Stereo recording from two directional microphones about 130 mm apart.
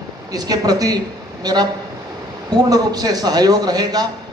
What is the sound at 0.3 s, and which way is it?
A woman's voice, 30° right (ahead or behind).